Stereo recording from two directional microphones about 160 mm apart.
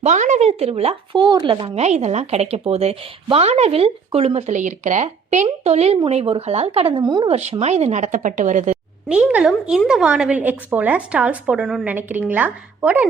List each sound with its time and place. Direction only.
0.0 s speech: 50° right (ahead or behind); by 7.3 s 25° right (ahead or behind)
7.3 s a woman's voice: 40° right (ahead or behind)
9.0 s a woman's voice: 5° right (ahead or behind)